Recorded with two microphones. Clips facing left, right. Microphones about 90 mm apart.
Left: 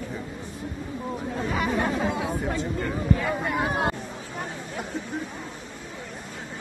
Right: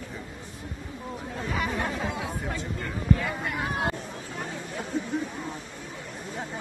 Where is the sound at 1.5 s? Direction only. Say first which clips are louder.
Left 3 dB; 15° left (ahead or behind).